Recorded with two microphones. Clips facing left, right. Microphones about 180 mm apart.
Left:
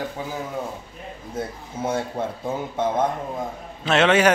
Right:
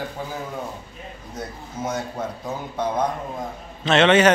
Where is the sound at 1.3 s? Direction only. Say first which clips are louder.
Left 3 dB; 30° left (ahead or behind).